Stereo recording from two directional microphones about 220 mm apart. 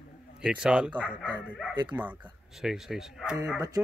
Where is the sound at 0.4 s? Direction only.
5° right (ahead or behind).